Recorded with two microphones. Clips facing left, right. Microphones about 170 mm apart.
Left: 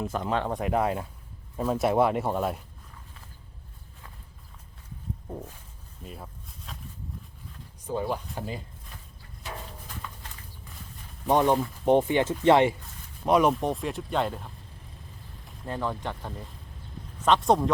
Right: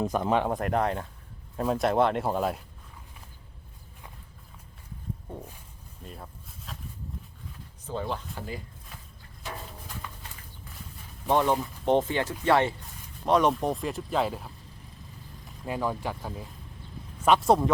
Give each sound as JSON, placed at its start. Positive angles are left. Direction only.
{"t": 0.1, "sound": "speech", "side_deg": -15}
{"t": 0.5, "sound": "speech", "side_deg": 0}
{"t": 6.0, "sound": "a sound", "side_deg": 0}
{"t": 7.9, "sound": "speech", "side_deg": 10}
{"t": 11.3, "sound": "speech", "side_deg": 15}